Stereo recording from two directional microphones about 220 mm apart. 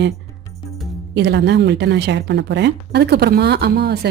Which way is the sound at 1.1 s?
50° right (ahead or behind).